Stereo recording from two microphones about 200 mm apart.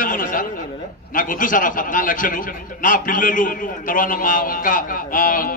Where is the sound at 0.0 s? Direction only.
45° left (ahead or behind).